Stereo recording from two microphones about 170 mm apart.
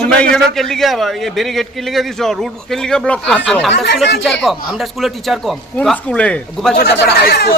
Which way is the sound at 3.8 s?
90° left.